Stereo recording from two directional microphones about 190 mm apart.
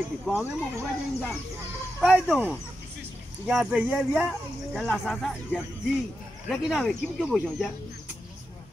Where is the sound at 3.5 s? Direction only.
Centre (ahead or behind).